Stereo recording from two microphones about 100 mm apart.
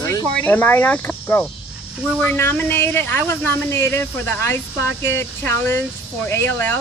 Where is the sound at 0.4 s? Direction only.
20° left (ahead or behind).